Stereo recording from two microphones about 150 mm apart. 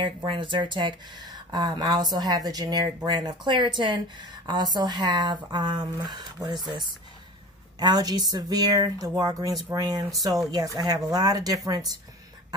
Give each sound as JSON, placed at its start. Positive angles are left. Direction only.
{"t": 0.0, "sound": "speech", "side_deg": -35}
{"t": 7.8, "sound": "speech", "side_deg": -25}